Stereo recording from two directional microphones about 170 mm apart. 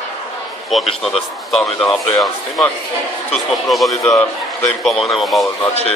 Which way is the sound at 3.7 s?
Centre (ahead or behind).